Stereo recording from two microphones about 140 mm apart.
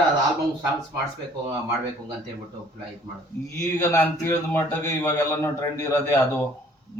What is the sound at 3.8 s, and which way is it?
A man's voice, 15° left (ahead or behind).